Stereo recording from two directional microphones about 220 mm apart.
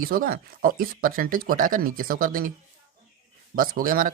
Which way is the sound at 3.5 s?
40° right (ahead or behind).